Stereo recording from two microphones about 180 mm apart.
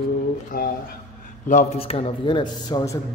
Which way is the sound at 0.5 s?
55° left (ahead or behind).